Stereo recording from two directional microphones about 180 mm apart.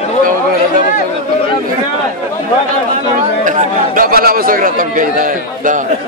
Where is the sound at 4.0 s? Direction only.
55° right (ahead or behind).